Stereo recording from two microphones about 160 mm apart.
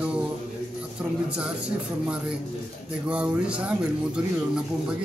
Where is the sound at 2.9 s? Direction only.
5° right (ahead or behind).